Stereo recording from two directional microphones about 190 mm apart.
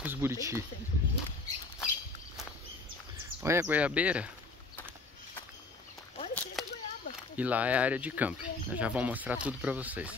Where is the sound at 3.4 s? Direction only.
15° right (ahead or behind).